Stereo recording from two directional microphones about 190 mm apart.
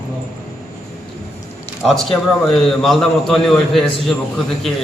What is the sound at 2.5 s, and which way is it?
Speech, centre (ahead or behind).